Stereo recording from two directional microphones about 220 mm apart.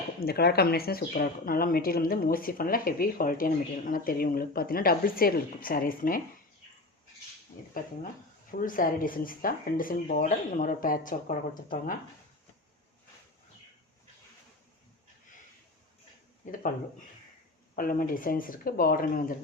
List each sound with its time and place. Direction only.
0.2 s speech: 45° left (ahead or behind)
8.5 s speech: 40° left (ahead or behind)
17.7 s speech: 40° left (ahead or behind)